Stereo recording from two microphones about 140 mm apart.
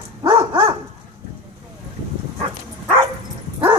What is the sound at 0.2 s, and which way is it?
Dog, 35° right (ahead or behind).